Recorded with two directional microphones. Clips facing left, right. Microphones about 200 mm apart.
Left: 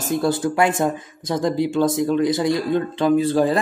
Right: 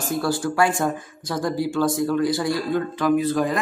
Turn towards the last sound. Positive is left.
turn(degrees=30)  # may be behind; listen again after turning